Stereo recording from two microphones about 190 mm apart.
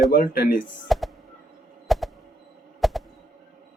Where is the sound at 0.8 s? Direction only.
Centre (ahead or behind).